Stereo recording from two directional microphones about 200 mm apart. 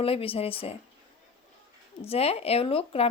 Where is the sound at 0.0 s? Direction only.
30° left (ahead or behind).